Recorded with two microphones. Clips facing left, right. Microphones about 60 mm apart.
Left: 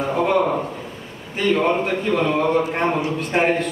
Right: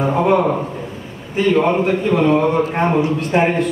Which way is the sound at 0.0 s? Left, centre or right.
Centre.